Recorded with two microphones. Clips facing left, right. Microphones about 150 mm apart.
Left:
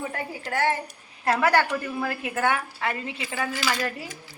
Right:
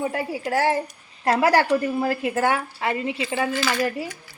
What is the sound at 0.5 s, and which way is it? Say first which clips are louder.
A woman's voice: right 3 dB; 35° right (ahead or behind).